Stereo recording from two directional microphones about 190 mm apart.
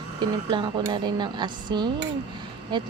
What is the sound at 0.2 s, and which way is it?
Speech, 25° right (ahead or behind).